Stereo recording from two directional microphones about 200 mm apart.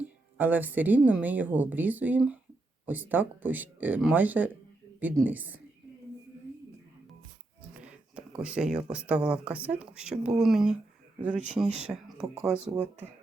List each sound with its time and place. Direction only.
0.3 s speech: 10° right (ahead or behind)
7.7 s a sound: 5° right (ahead or behind)
8.4 s speech: 5° right (ahead or behind)